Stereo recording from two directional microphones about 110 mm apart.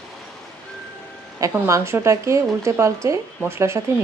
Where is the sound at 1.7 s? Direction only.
25° right (ahead or behind).